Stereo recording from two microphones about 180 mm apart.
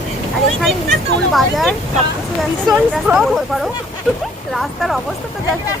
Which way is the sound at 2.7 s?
5° right (ahead or behind).